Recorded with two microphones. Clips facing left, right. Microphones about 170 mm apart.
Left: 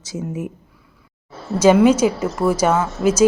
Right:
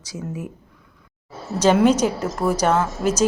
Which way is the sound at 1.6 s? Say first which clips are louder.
Left 3 dB; 5° left (ahead or behind).